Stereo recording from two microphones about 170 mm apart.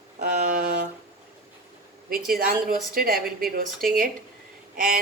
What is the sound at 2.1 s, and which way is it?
A woman's voice, 60° right (ahead or behind).